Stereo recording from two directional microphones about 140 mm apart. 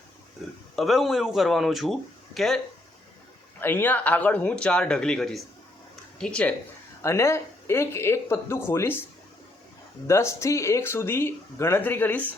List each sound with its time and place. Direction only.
0.8 s speech: centre (ahead or behind)
3.6 s speech: 15° left (ahead or behind)
7.0 s speech: 20° left (ahead or behind)
10.1 s speech: 20° left (ahead or behind)